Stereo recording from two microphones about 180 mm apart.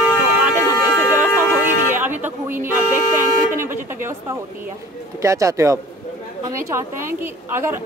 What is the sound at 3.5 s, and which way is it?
Speech, 10° right (ahead or behind).